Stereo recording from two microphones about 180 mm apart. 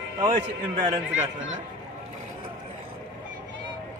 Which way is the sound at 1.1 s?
90° right.